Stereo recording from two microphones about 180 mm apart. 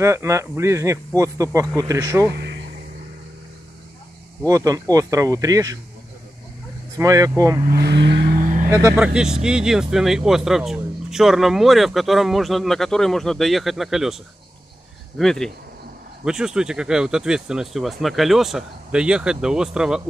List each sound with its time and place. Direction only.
0.0 s speech: 15° right (ahead or behind)
2.3 s a sound: 70° right (ahead or behind)
4.5 s speech: 20° right (ahead or behind)
7.0 s speech: 20° right (ahead or behind)
7.6 s speech: 60° right (ahead or behind)
8.4 s music: 45° right (ahead or behind)
8.6 s speech: 15° right (ahead or behind)